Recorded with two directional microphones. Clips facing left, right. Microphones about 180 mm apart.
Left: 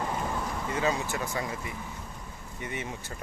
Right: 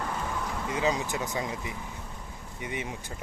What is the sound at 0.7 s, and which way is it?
Speech, 15° right (ahead or behind).